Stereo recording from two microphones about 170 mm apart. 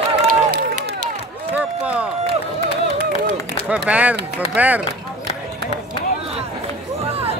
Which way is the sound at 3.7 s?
10° right (ahead or behind).